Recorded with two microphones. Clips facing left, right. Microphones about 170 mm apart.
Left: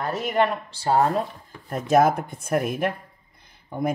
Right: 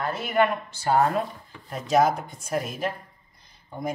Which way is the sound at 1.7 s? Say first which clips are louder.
Left 3 dB; 50° left (ahead or behind).